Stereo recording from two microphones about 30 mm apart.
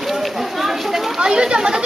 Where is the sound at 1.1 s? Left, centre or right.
Right.